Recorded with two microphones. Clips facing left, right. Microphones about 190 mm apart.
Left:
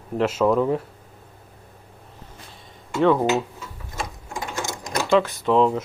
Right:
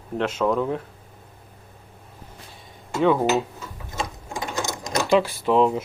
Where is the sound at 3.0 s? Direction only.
5° right (ahead or behind).